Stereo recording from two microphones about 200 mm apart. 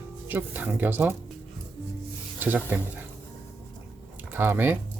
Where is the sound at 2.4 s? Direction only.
10° right (ahead or behind).